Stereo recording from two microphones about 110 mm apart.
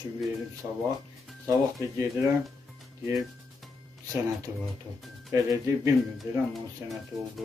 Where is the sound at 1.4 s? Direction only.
30° right (ahead or behind).